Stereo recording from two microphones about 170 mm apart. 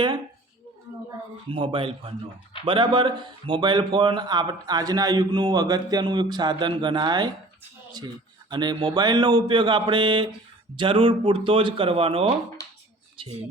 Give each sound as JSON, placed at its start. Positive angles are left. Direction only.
{"t": 1.5, "sound": "speech", "side_deg": -30}
{"t": 8.4, "sound": "speech", "side_deg": -25}